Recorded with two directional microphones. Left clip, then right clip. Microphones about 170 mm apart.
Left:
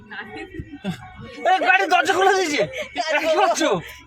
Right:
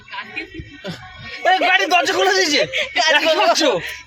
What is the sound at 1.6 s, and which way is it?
Speech, 45° right (ahead or behind).